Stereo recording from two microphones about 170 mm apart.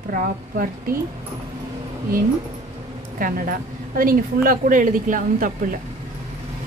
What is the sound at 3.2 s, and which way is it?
A woman's voice, 55° right (ahead or behind).